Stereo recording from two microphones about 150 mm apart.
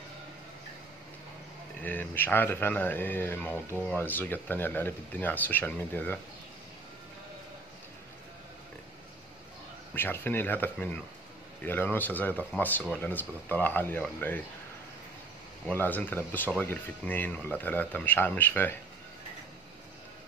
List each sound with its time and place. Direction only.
1.8 s speech: 10° left (ahead or behind)
9.9 s speech: 15° left (ahead or behind)
15.6 s speech: 10° left (ahead or behind)